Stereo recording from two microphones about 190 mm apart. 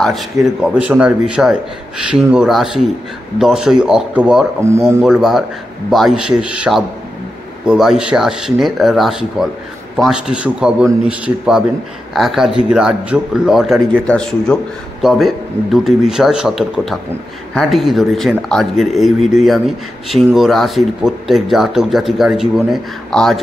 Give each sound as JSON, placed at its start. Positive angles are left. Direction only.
{"t": 0.7, "sound": "speech", "side_deg": -5}
{"t": 5.0, "sound": "speech", "side_deg": 0}